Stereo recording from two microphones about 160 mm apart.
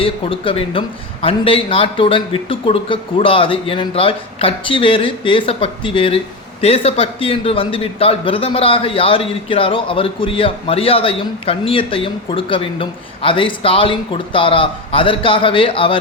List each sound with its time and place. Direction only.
0.0 s a man's voice: 35° left (ahead or behind)